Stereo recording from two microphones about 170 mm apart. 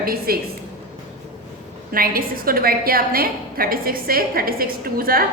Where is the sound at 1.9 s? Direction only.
60° right (ahead or behind).